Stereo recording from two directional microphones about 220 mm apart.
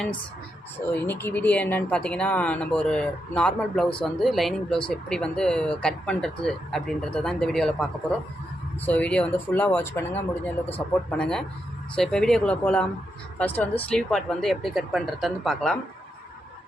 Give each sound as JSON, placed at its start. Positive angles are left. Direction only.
{"t": 0.9, "sound": "speech", "side_deg": 10}